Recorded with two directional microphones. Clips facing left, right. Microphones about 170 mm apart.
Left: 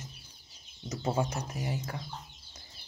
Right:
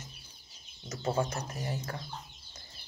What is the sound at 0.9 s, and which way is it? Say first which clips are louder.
Speech: even; 15° left (ahead or behind).